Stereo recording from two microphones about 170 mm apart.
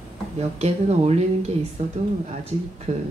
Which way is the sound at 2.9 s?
40° right (ahead or behind).